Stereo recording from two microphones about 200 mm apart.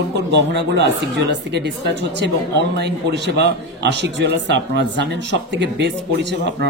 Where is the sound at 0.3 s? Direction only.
60° right (ahead or behind).